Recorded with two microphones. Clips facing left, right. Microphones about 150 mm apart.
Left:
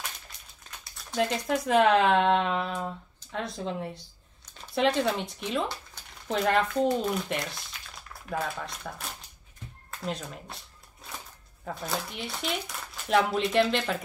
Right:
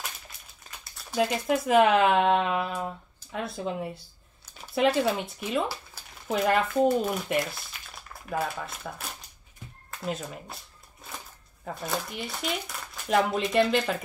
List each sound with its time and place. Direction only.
0.7 s speech: 5° right (ahead or behind)
11.6 s speech: centre (ahead or behind)